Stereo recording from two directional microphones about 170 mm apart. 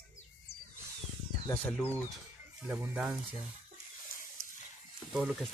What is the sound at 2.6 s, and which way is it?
Speech, 10° right (ahead or behind).